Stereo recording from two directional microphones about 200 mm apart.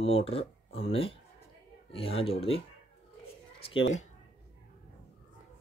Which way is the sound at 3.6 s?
30° left (ahead or behind).